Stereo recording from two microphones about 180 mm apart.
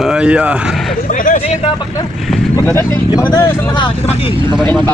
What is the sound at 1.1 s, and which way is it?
Speech, 45° left (ahead or behind).